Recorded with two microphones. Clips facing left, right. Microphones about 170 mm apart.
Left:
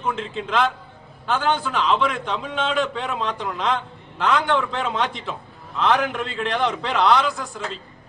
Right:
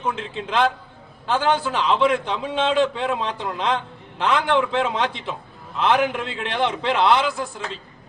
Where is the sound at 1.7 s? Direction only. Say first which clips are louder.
Right 2 dB; 30° right (ahead or behind).